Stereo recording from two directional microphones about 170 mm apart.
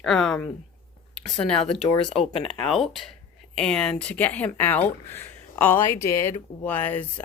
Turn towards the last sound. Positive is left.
turn(degrees=10)  # may be behind; listen again after turning